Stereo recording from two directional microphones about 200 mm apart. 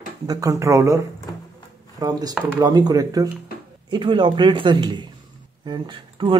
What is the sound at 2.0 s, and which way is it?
Speech, 20° right (ahead or behind).